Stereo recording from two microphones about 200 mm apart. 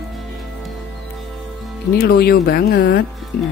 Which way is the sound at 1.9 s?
50° left (ahead or behind).